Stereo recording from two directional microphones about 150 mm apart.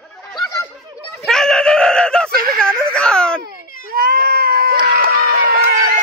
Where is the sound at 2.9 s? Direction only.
5° left (ahead or behind).